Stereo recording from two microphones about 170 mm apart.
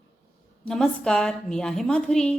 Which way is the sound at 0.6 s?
5° left (ahead or behind).